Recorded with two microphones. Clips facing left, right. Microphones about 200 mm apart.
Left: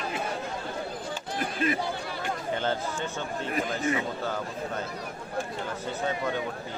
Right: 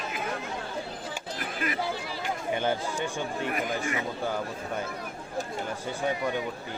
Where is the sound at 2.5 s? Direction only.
15° right (ahead or behind).